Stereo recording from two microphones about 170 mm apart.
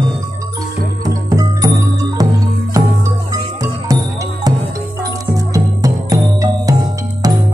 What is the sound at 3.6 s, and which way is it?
Music, 20° right (ahead or behind).